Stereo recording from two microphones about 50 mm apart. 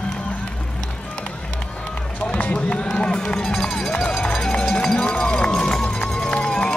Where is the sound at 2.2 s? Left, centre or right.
Left.